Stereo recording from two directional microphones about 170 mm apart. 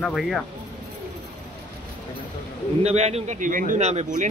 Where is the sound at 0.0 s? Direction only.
Centre (ahead or behind).